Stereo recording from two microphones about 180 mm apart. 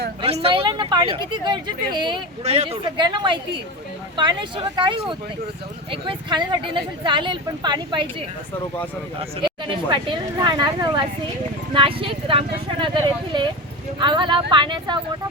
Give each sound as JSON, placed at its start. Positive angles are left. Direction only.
{"t": 0.2, "sound": "speech", "side_deg": -35}
{"t": 9.4, "sound": "speech", "side_deg": -25}